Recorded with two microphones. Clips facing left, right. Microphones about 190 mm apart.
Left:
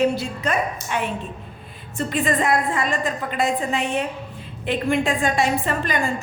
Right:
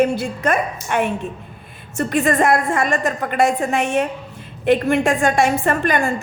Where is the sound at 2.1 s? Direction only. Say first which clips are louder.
Right 4 dB; 45° right (ahead or behind).